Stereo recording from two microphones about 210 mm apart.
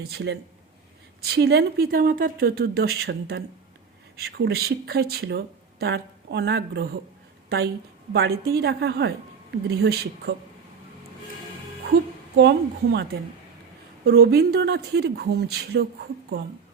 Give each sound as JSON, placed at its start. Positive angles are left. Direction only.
{"t": 0.1, "sound": "speech", "side_deg": -55}
{"t": 8.1, "sound": "speech", "side_deg": -50}
{"t": 12.4, "sound": "speech", "side_deg": -55}